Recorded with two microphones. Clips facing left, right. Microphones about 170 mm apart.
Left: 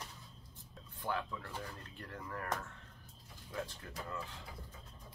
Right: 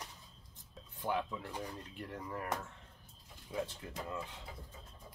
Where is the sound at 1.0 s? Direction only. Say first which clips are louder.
Right 3 dB; 15° right (ahead or behind).